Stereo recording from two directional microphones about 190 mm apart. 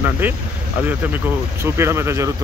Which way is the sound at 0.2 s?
10° right (ahead or behind).